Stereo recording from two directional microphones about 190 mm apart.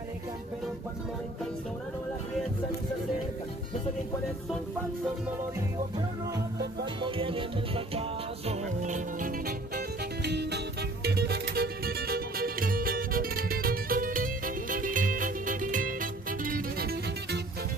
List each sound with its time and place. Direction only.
7.0 s music: 30° right (ahead or behind)
9.8 s music: 60° right (ahead or behind)